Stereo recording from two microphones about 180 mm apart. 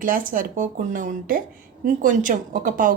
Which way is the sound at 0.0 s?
50° right (ahead or behind).